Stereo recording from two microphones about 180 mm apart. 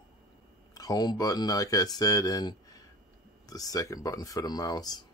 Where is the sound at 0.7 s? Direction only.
20° left (ahead or behind).